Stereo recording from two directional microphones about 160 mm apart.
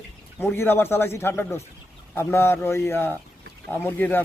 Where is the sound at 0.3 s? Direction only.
15° left (ahead or behind).